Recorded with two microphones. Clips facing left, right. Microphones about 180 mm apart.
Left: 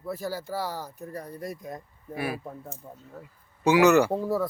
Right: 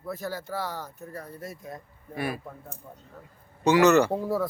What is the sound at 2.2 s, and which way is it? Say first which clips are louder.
Speech: even; 5° left (ahead or behind).